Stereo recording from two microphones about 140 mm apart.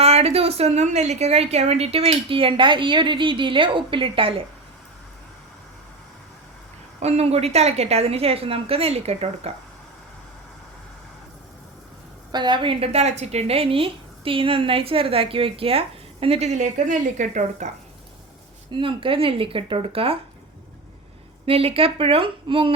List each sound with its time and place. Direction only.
0.0 s a woman's voice: 45° right (ahead or behind)
7.0 s a woman's voice: 50° right (ahead or behind)
12.3 s a woman's voice: 35° right (ahead or behind); by 17.7 s 60° right (ahead or behind)
18.7 s a woman's voice: 35° right (ahead or behind)
21.4 s a woman's voice: 45° right (ahead or behind)